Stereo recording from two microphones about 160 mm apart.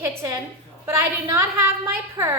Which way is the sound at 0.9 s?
15° right (ahead or behind).